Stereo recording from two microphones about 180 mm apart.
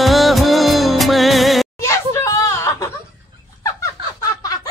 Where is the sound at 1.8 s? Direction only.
15° left (ahead or behind).